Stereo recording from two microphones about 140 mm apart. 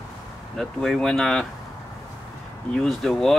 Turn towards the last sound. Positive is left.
turn(degrees=0)  # may be behind; listen again after turning